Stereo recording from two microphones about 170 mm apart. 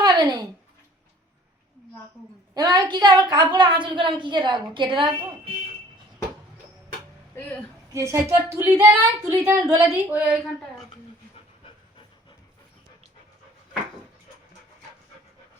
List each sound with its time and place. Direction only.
0.0 s a sound: 25° right (ahead or behind)
2.6 s a woman's voice: 25° right (ahead or behind)
7.9 s a woman's voice: 15° right (ahead or behind)